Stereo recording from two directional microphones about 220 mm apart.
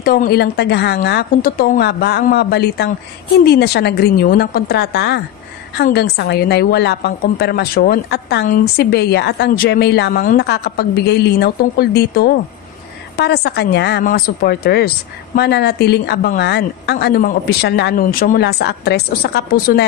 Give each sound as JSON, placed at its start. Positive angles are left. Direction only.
{"t": 0.0, "sound": "a woman's voice", "side_deg": 40}